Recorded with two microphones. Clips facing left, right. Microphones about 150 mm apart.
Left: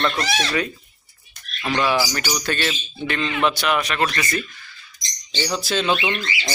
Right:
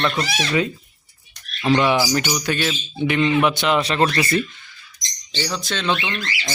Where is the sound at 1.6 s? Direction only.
20° right (ahead or behind).